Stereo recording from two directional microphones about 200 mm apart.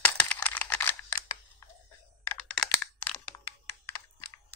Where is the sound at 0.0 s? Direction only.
10° left (ahead or behind).